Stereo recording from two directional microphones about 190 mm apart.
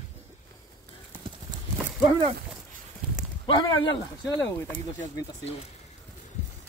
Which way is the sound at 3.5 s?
25° left (ahead or behind).